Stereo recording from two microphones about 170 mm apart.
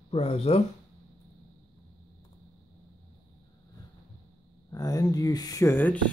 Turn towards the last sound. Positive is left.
turn(degrees=10)  # may be behind; listen again after turning